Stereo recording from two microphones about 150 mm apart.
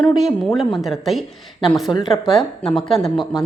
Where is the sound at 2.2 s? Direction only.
35° left (ahead or behind).